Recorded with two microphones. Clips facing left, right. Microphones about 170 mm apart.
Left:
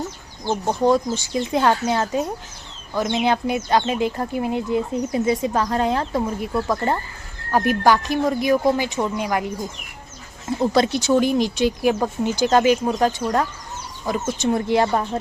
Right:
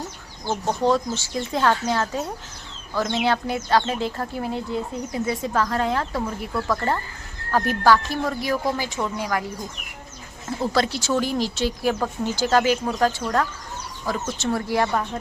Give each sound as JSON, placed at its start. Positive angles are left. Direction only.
{"t": 0.4, "sound": "speech", "side_deg": 15}
{"t": 10.6, "sound": "speech", "side_deg": 20}